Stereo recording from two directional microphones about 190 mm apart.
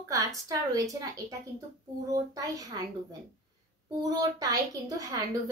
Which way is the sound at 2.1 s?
20° right (ahead or behind).